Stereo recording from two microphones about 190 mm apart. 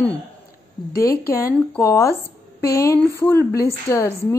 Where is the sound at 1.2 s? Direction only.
15° left (ahead or behind).